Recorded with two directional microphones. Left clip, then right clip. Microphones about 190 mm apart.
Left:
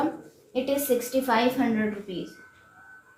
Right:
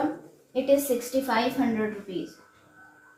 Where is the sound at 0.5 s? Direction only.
55° left (ahead or behind).